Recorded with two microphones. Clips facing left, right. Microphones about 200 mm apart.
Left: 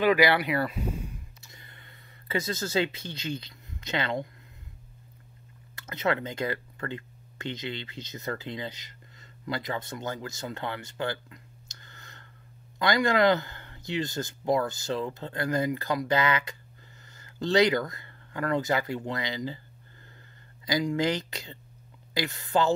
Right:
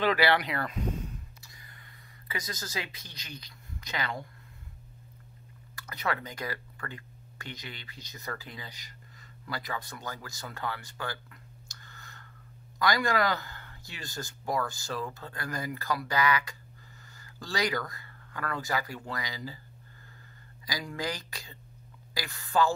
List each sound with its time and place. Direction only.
0.0 s speech: 10° left (ahead or behind)
1.4 s a sound: 25° left (ahead or behind)
5.8 s speech: 25° left (ahead or behind)
20.6 s speech: 20° left (ahead or behind)